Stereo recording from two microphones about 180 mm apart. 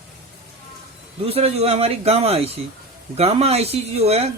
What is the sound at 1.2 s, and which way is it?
Speech, 35° right (ahead or behind).